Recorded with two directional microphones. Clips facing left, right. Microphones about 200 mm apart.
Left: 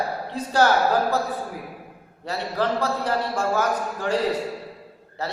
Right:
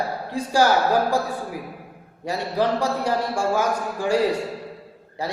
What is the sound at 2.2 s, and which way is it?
A man's voice, 15° right (ahead or behind).